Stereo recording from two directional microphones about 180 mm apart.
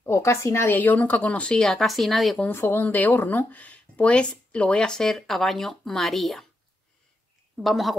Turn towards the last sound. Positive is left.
turn(degrees=0)  # may be behind; listen again after turning